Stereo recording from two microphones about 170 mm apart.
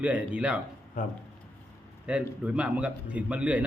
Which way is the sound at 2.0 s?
5° right (ahead or behind).